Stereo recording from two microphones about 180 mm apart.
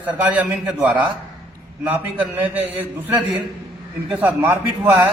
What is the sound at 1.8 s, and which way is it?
A man's voice, 10° right (ahead or behind).